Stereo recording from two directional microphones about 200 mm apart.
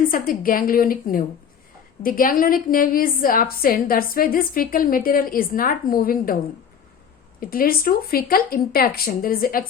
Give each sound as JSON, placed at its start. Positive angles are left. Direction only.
{"t": 0.0, "sound": "a woman's voice", "side_deg": 45}
{"t": 7.3, "sound": "a woman's voice", "side_deg": 45}